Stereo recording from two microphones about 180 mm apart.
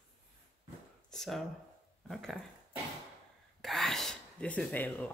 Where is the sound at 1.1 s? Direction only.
Centre (ahead or behind).